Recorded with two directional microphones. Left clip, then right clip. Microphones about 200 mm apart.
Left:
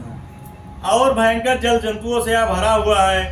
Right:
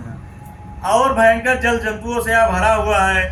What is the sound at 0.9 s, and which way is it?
A man's voice, 10° left (ahead or behind).